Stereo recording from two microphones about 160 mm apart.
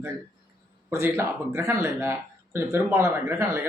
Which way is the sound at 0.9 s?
15° right (ahead or behind).